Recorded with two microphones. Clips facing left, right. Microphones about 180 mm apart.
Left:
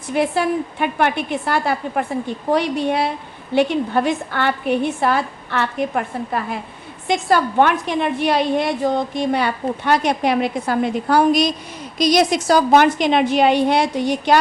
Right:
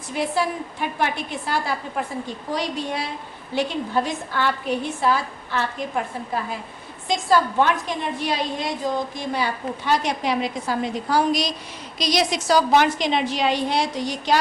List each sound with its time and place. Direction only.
0.1 s a woman's voice: 60° left (ahead or behind)